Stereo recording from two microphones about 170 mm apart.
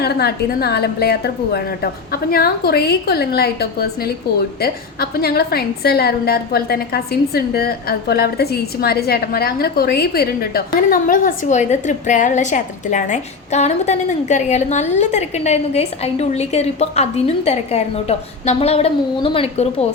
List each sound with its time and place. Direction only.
0.0 s a woman's voice: 70° left (ahead or behind); by 19.9 s 35° left (ahead or behind)